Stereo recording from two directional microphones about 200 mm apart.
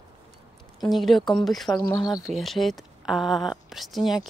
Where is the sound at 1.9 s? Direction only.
20° left (ahead or behind).